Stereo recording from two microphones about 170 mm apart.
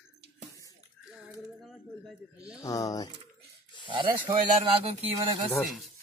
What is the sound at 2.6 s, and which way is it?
Speech, 20° left (ahead or behind).